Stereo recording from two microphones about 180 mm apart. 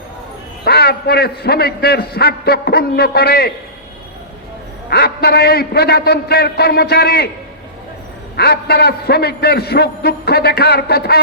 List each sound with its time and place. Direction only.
0.6 s a man's voice: 60° left (ahead or behind)
4.9 s a man's voice: 60° left (ahead or behind)
8.4 s a man's voice: 60° left (ahead or behind)